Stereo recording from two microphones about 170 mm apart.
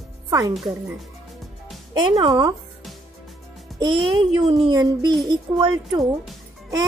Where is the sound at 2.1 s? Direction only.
30° right (ahead or behind).